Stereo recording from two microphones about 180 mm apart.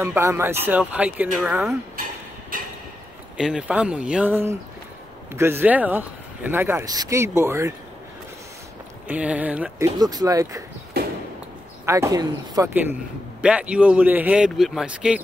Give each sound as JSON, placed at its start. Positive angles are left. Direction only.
{"t": 0.0, "sound": "speech", "side_deg": -15}
{"t": 3.3, "sound": "speech", "side_deg": -5}
{"t": 9.0, "sound": "speech", "side_deg": -5}
{"t": 9.9, "sound": "speech", "side_deg": -20}
{"t": 10.9, "sound": "a sound", "side_deg": -60}
{"t": 11.8, "sound": "speech", "side_deg": -15}
{"t": 13.4, "sound": "speech", "side_deg": -5}